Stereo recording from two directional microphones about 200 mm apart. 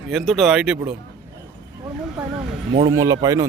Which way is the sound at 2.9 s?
15° right (ahead or behind).